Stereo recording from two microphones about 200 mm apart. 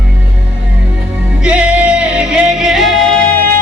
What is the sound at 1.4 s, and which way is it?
Music, 5° right (ahead or behind).